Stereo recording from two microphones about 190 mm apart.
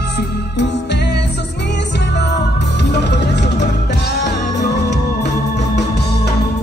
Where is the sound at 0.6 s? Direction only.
60° left (ahead or behind).